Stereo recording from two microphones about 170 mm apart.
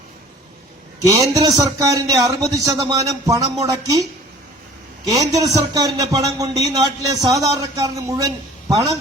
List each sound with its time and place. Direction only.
1.0 s a man's voice: 20° right (ahead or behind)
5.0 s a man's voice: 20° right (ahead or behind)